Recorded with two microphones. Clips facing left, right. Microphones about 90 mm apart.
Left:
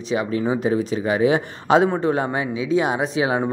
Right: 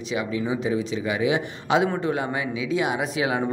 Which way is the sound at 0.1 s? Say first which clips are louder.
Left 5 dB; 45° left (ahead or behind).